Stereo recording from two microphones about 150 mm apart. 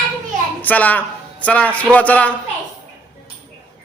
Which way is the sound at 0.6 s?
10° left (ahead or behind).